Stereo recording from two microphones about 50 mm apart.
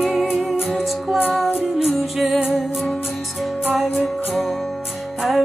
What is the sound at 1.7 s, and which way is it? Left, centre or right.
Music, centre.